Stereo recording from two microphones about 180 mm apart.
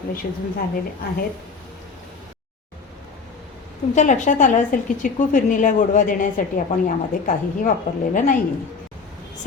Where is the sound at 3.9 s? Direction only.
45° left (ahead or behind).